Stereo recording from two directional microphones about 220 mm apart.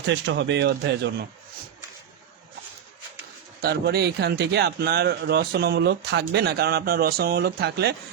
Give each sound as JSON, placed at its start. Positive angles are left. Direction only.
{"t": 0.0, "sound": "a man's voice", "side_deg": -55}
{"t": 3.6, "sound": "a man's voice", "side_deg": -45}